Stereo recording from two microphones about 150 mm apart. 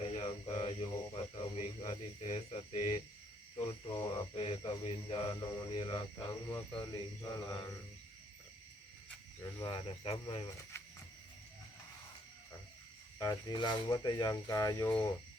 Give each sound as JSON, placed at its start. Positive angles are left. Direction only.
{"t": 0.0, "sound": "a sound", "side_deg": 40}
{"t": 1.8, "sound": "speech", "side_deg": 30}
{"t": 3.9, "sound": "speech", "side_deg": 25}
{"t": 4.4, "sound": "speech", "side_deg": 40}
{"t": 9.6, "sound": "speech", "side_deg": 35}
{"t": 13.1, "sound": "speech", "side_deg": 30}
{"t": 14.8, "sound": "speech", "side_deg": 10}